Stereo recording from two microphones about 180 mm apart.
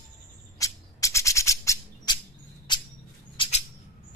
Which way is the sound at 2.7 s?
25° left (ahead or behind).